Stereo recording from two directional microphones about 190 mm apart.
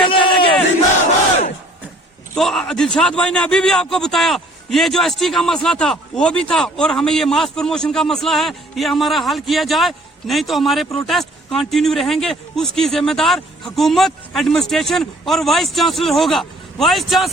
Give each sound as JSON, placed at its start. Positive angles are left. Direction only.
{"t": 0.1, "sound": "battle cry", "side_deg": 25}
{"t": 2.3, "sound": "a man's voice", "side_deg": 0}